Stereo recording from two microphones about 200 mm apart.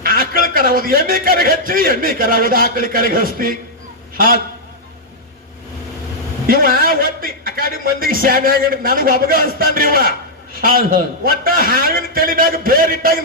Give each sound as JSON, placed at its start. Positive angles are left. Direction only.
{"t": 0.0, "sound": "a man's voice", "side_deg": -45}
{"t": 6.5, "sound": "a man's voice", "side_deg": -45}